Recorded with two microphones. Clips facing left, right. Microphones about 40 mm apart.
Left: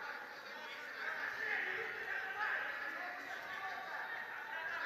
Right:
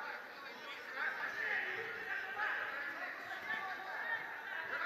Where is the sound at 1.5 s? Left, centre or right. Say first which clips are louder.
Even; centre.